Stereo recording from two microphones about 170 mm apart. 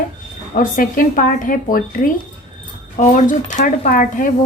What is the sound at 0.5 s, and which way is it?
A woman's voice, 55° left (ahead or behind).